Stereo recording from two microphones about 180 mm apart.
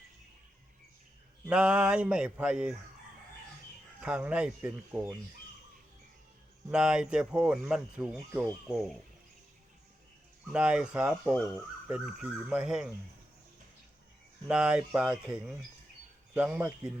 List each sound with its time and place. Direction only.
1.5 s speech: 5° right (ahead or behind)
4.0 s speech: 5° right (ahead or behind)
6.7 s speech: 5° right (ahead or behind)
10.5 s speech: 5° right (ahead or behind)
14.4 s speech: 5° right (ahead or behind)